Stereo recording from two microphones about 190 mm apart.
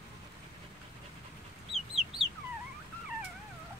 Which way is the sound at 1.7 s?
Centre (ahead or behind).